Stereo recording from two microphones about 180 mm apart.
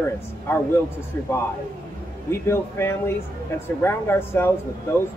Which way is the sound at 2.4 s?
15° left (ahead or behind).